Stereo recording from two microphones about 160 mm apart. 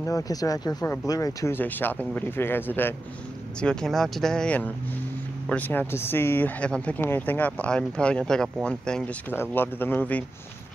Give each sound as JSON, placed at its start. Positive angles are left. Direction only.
{"t": 0.0, "sound": "speech", "side_deg": 20}
{"t": 3.6, "sound": "speech", "side_deg": 5}